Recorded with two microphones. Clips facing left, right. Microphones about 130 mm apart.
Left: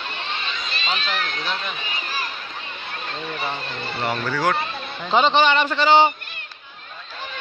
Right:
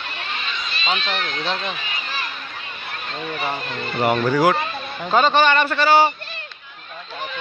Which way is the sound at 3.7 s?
30° left (ahead or behind).